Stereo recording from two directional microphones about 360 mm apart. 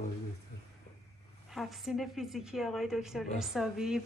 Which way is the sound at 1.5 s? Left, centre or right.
Centre.